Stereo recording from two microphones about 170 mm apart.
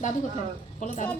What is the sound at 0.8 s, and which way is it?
Speech, 45° left (ahead or behind).